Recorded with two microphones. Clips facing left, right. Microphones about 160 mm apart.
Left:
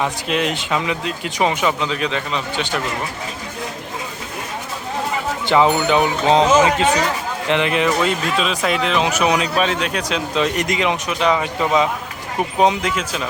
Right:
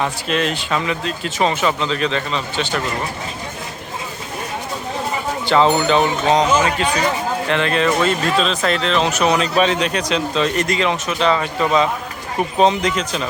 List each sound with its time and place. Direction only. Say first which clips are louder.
0.0 s speech: even; 15° left (ahead or behind)
5.6 s speech: right 1 dB; 10° left (ahead or behind)